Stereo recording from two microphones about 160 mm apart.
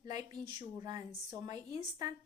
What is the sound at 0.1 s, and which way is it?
Speech, 25° right (ahead or behind).